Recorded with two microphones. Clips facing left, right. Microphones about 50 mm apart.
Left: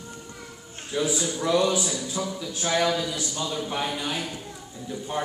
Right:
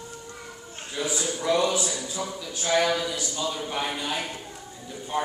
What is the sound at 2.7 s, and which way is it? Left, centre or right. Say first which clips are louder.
Speech: right 1 dB; centre.